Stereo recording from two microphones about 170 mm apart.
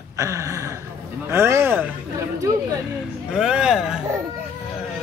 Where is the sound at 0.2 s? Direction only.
15° right (ahead or behind).